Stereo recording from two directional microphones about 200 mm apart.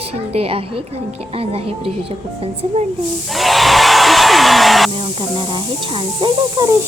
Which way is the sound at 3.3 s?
Centre (ahead or behind).